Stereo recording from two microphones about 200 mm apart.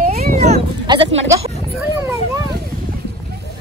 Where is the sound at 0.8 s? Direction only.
25° right (ahead or behind).